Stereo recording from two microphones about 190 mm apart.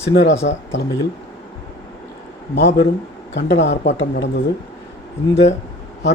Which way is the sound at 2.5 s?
65° left (ahead or behind).